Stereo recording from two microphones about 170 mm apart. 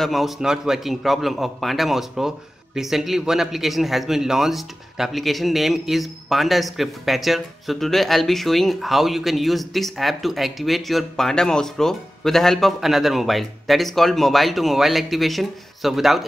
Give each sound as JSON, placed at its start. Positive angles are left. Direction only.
{"t": 0.0, "sound": "a man's voice", "side_deg": 0}